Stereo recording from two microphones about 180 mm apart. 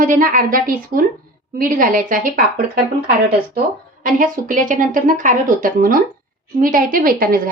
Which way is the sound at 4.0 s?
50° right (ahead or behind).